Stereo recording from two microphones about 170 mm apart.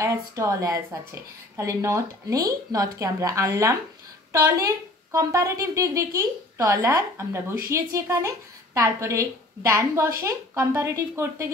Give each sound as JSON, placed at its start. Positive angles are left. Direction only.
{"t": 0.0, "sound": "a woman's voice", "side_deg": -20}